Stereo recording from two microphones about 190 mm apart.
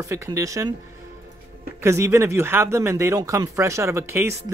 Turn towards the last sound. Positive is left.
turn(degrees=-15)  # may be behind; listen again after turning